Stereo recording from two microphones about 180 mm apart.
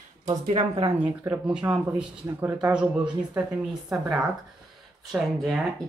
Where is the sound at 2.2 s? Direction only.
15° right (ahead or behind).